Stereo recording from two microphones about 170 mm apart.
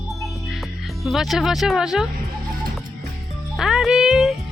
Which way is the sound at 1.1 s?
Centre (ahead or behind).